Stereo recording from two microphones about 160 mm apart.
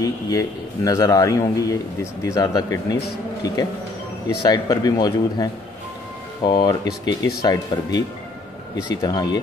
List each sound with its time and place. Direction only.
0.0 s a man's voice: 20° left (ahead or behind)
4.5 s a man's voice: 25° left (ahead or behind)